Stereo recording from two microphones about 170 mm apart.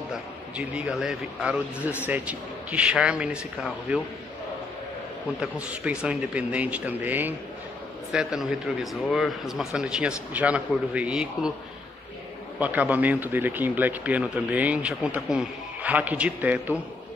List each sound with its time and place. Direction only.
0.6 s speech: 5° right (ahead or behind)
5.4 s speech: 5° right (ahead or behind)
12.5 s speech: 10° right (ahead or behind)